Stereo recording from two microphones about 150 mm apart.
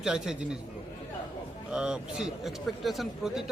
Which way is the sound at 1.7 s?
5° right (ahead or behind).